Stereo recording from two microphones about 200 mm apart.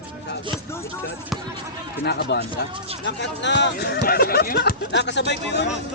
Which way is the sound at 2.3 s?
55° left (ahead or behind).